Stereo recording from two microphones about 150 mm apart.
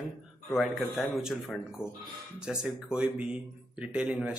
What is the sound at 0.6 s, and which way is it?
Speech, centre (ahead or behind).